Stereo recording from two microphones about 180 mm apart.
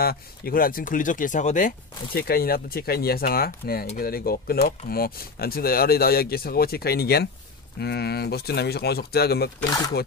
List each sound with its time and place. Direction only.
0.0 s speech: 55° left (ahead or behind)
2.1 s speech: 60° left (ahead or behind)